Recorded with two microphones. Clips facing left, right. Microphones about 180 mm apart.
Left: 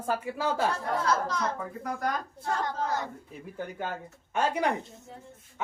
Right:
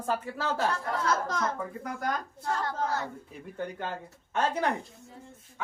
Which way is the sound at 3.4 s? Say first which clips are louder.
Even; 5° left (ahead or behind).